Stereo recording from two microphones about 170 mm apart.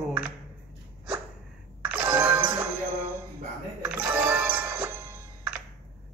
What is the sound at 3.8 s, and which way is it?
Music, 10° right (ahead or behind).